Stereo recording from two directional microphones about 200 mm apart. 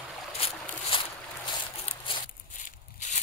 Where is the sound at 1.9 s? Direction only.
40° left (ahead or behind).